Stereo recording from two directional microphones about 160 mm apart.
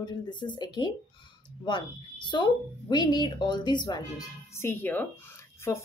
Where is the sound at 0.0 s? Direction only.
25° left (ahead or behind).